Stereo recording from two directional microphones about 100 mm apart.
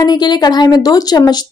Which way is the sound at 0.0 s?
45° left (ahead or behind).